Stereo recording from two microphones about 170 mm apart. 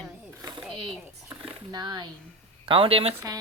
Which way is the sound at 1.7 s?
25° right (ahead or behind).